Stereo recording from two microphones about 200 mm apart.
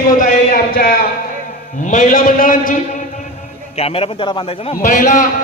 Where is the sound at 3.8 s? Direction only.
30° left (ahead or behind).